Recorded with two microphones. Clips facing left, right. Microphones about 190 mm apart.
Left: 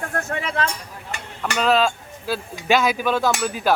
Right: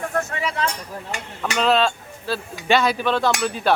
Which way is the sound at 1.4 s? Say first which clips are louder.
Even; 5° left (ahead or behind).